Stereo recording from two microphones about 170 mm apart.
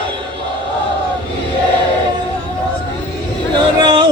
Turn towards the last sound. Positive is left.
turn(degrees=-25)  # may be behind; listen again after turning